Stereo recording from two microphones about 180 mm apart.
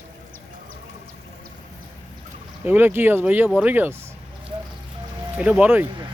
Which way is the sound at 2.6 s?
10° right (ahead or behind).